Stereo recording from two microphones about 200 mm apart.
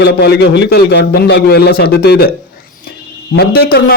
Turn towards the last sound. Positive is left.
turn(degrees=50)  # may be behind; listen again after turning